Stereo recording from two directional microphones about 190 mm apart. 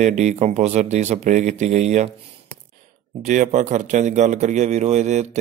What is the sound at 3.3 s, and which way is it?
A man's voice, 40° right (ahead or behind).